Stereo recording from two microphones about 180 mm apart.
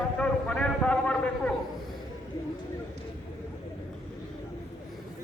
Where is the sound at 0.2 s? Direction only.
5° left (ahead or behind).